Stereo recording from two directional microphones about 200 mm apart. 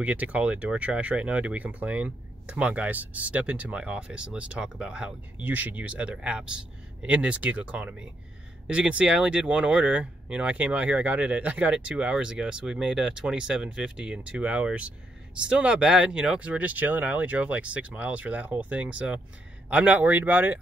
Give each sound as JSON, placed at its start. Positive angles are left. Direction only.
{"t": 0.0, "sound": "speech", "side_deg": -5}